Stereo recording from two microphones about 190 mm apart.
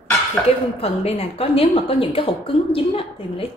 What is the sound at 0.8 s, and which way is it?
A woman's voice, 30° left (ahead or behind).